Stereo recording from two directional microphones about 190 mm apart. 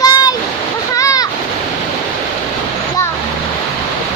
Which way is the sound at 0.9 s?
15° left (ahead or behind).